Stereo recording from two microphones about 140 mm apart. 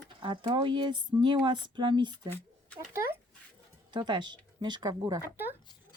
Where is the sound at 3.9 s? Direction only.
35° right (ahead or behind).